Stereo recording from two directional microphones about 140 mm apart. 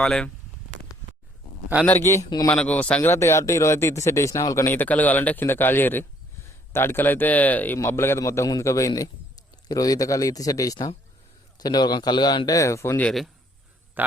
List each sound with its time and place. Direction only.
0.0 s speech: 5° left (ahead or behind)
2.0 s a man's voice: 25° left (ahead or behind)
2.5 s a man's voice: 10° left (ahead or behind)
13.0 s speech: 5° left (ahead or behind)